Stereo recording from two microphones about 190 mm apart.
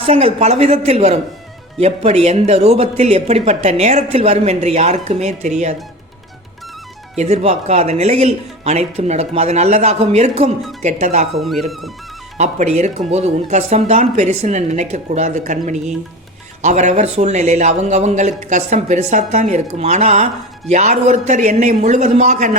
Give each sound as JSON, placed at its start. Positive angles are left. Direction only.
{"t": 0.0, "sound": "speech", "side_deg": -30}
{"t": 7.2, "sound": "speech", "side_deg": -35}
{"t": 11.3, "sound": "speech", "side_deg": 0}
{"t": 12.4, "sound": "speech", "side_deg": -35}